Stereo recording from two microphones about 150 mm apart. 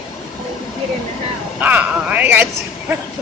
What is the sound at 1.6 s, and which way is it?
Speech, 10° right (ahead or behind).